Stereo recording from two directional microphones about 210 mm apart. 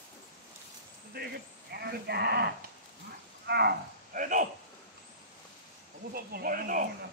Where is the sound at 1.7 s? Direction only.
50° right (ahead or behind).